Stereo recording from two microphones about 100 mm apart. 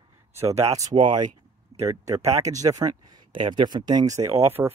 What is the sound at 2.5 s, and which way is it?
Speech, 35° right (ahead or behind).